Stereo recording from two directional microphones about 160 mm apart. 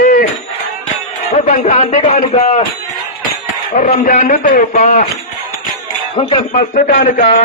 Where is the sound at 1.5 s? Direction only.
50° left (ahead or behind).